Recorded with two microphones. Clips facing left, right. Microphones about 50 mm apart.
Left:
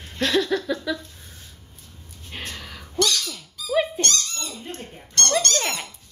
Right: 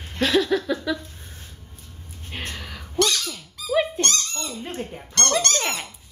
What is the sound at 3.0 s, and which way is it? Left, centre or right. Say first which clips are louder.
Squawk: right 1 dB; right.